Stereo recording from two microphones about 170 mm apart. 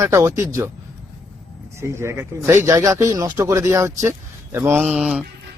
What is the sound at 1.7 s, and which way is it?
Speech, 15° right (ahead or behind).